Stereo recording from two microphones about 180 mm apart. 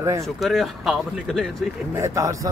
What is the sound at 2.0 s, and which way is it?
Speech, 15° right (ahead or behind).